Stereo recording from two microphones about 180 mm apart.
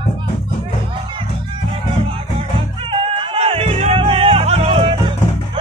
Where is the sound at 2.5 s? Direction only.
30° right (ahead or behind).